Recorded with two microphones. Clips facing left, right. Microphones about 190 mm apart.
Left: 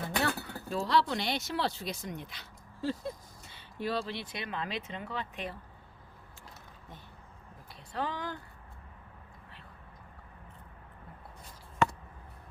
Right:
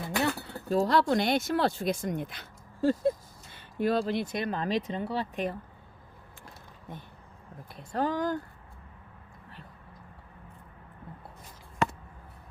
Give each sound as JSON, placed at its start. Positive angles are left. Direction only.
{"t": 0.2, "sound": "chink", "side_deg": -20}
{"t": 0.7, "sound": "speech", "side_deg": -45}
{"t": 7.8, "sound": "speech", "side_deg": -45}